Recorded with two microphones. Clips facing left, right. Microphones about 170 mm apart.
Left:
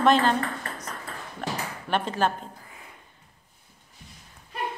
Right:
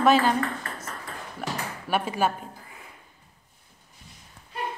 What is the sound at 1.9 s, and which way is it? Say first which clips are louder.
Speech: even; 10° right (ahead or behind).